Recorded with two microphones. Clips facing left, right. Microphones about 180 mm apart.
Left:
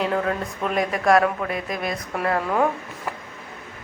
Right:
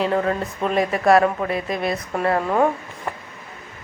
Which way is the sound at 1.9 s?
5° right (ahead or behind).